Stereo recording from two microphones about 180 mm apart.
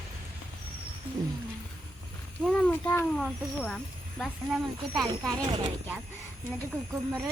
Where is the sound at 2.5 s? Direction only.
10° left (ahead or behind).